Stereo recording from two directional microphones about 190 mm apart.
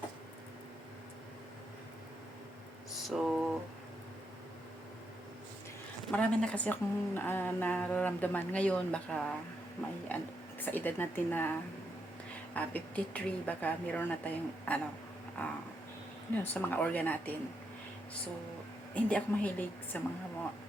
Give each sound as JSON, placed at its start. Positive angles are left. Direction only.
{"t": 3.1, "sound": "a sound", "side_deg": -5}
{"t": 6.1, "sound": "a woman's voice", "side_deg": 5}
{"t": 12.5, "sound": "a woman's voice", "side_deg": 10}
{"t": 16.3, "sound": "a woman's voice", "side_deg": 10}
{"t": 19.0, "sound": "a woman's voice", "side_deg": 5}